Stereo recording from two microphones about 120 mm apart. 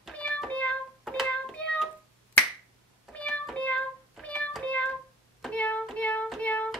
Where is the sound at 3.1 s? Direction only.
10° left (ahead or behind).